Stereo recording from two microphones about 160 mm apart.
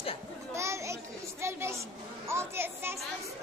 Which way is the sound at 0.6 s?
20° right (ahead or behind).